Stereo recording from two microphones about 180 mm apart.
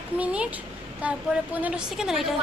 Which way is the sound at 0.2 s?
10° right (ahead or behind).